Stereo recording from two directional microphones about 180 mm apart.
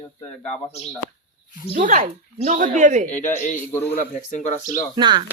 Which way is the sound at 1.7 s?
45° right (ahead or behind).